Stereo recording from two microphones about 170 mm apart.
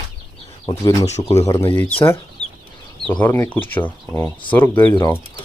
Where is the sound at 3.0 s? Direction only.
10° left (ahead or behind).